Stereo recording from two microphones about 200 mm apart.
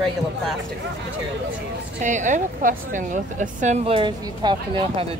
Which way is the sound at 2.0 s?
40° right (ahead or behind).